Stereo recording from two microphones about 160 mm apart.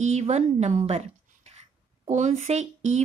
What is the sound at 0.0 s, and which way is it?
A woman's voice, 40° right (ahead or behind).